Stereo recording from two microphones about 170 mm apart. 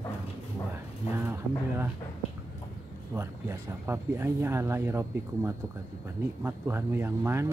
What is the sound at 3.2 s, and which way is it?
Speech, 15° right (ahead or behind).